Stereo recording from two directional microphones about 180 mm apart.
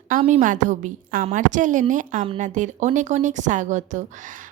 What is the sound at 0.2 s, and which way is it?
Speech, 40° right (ahead or behind).